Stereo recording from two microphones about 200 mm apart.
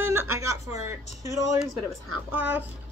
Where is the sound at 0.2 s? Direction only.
15° right (ahead or behind).